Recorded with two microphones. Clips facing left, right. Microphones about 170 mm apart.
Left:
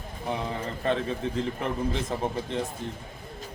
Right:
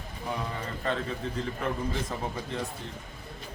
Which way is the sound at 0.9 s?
20° left (ahead or behind).